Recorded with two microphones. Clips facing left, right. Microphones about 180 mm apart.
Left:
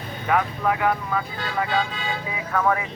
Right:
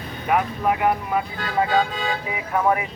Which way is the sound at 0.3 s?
20° right (ahead or behind).